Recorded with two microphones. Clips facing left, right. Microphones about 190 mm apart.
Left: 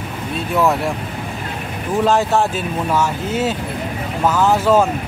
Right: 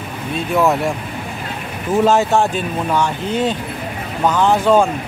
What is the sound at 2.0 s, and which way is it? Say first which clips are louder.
Speech: right 1 dB; centre (ahead or behind).